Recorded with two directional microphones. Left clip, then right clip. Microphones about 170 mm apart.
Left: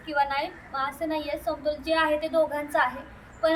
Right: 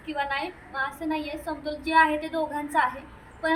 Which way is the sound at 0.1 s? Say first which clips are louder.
Left 3 dB; 5° left (ahead or behind).